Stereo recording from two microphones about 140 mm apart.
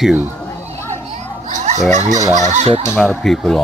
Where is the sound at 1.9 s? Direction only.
55° right (ahead or behind).